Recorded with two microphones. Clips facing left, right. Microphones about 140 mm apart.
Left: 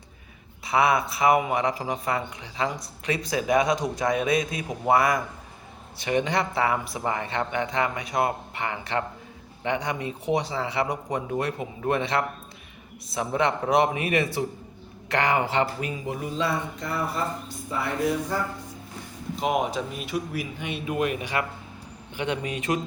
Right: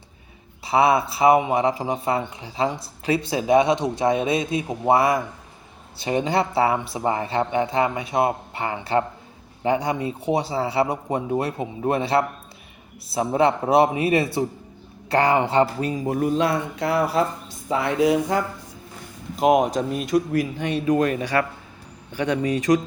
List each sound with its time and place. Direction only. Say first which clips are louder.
0.6 s a man's voice: right 4 dB; 30° right (ahead or behind)
16.1 s speech: right 7 dB; 55° right (ahead or behind); by 18.4 s 90° right
19.4 s speech: right 9 dB; 55° right (ahead or behind)
19.9 s speech: right 9 dB; 5° left (ahead or behind)
20.7 s a man's voice: right 11 dB; 40° right (ahead or behind)
22.1 s a man's voice: right 6 dB; 40° right (ahead or behind)